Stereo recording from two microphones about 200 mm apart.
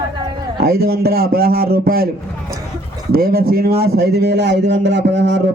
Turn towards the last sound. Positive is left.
turn(degrees=-60)  # may be behind; listen again after turning